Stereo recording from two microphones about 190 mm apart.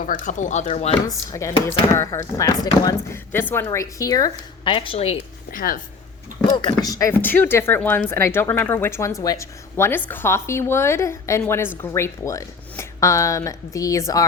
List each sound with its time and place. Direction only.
0.0 s speech: 45° left (ahead or behind)
1.0 s a woman's voice: 15° left (ahead or behind); by 5.2 s 35° left (ahead or behind)
5.5 s speech: 45° left (ahead or behind)
6.5 s a woman's voice: 25° left (ahead or behind)